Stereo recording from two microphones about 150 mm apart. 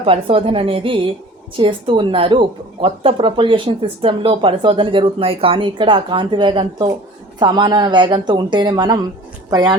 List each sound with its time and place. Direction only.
0.0 s speech: 35° right (ahead or behind)